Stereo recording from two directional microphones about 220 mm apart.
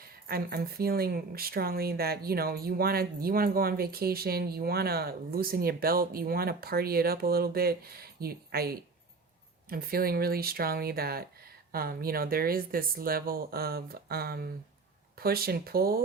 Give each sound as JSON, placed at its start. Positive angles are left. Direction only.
{"t": 0.0, "sound": "speech", "side_deg": -45}